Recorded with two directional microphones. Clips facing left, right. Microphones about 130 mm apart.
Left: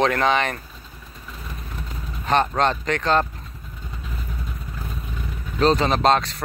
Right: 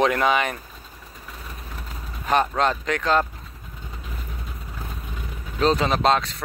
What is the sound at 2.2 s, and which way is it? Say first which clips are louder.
Vehicle: left 1 dB; 5° right (ahead or behind).